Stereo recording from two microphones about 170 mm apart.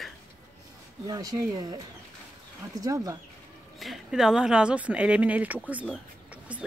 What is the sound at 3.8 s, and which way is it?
Speech, centre (ahead or behind).